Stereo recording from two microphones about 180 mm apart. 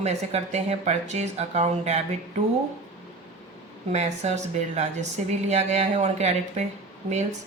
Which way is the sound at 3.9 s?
40° right (ahead or behind).